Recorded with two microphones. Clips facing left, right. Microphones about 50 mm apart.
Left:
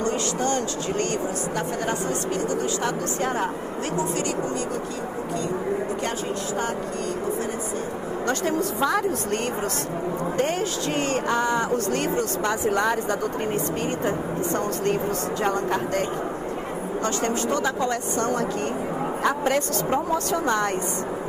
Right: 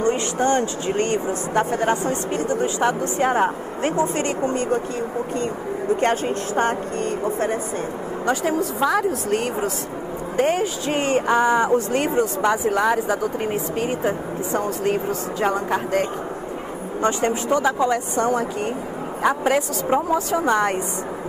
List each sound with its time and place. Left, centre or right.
0.0 s speech: right
5.9 s a woman's voice: right
8.3 s speech: centre
12.6 s speech: centre